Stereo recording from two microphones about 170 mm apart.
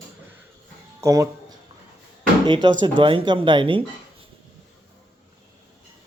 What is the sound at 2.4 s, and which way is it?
Speech, 25° right (ahead or behind).